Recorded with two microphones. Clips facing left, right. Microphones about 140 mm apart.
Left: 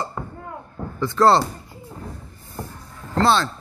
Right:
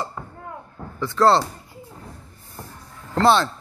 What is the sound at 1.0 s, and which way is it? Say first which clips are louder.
Speech: left 1 dB; centre (ahead or behind).